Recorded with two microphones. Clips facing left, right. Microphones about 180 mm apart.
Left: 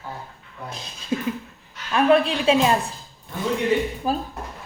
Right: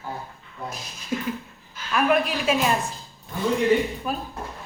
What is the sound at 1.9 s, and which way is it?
Speech, 30° left (ahead or behind).